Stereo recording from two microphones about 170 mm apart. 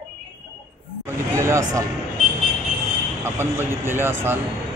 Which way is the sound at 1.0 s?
15° right (ahead or behind).